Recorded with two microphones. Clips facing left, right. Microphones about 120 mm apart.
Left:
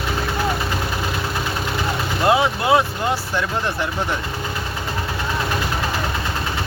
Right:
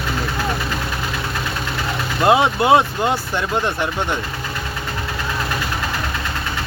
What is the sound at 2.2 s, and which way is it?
Speech, 25° right (ahead or behind).